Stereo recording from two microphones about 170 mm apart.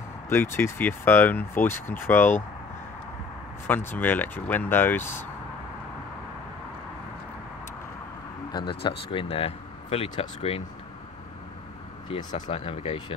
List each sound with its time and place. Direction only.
0.3 s speech: 15° left (ahead or behind)
3.6 s speech: 10° left (ahead or behind)
8.5 s speech: 25° left (ahead or behind)
12.4 s speech: 35° left (ahead or behind)